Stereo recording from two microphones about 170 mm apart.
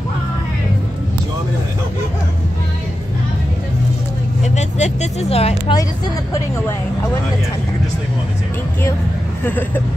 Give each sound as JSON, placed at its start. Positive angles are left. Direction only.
{"t": 4.6, "sound": "speech", "side_deg": 45}